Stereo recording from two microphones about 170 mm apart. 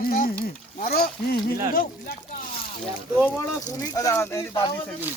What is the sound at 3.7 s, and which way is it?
Speech, 20° left (ahead or behind).